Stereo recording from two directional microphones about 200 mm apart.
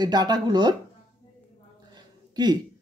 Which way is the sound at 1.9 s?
20° right (ahead or behind).